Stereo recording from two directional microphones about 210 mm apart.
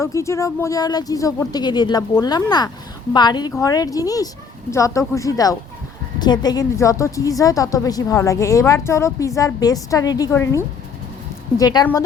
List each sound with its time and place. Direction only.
0.0 s a woman's voice: 15° left (ahead or behind)